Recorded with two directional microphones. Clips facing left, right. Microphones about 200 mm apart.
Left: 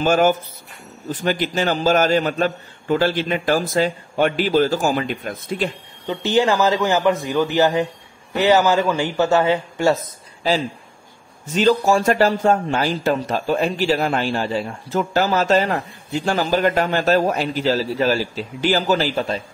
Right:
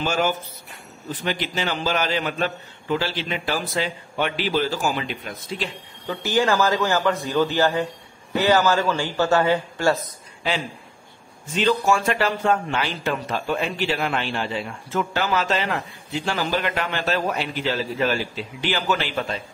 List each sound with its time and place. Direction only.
0.0 s a man's voice: 50° left (ahead or behind)
6.0 s a man's voice: 20° left (ahead or behind)
11.5 s speech: 40° left (ahead or behind)